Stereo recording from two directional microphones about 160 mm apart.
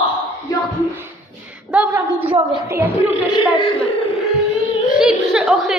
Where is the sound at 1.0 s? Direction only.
10° right (ahead or behind).